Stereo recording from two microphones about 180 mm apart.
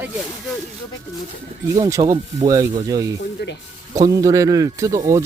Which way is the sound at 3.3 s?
70° left (ahead or behind).